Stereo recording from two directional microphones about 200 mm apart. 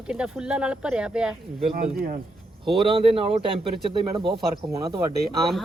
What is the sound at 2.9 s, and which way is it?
Speech, 25° right (ahead or behind).